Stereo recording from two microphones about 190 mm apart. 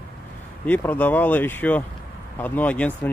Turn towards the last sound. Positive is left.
turn(degrees=5)  # may be behind; listen again after turning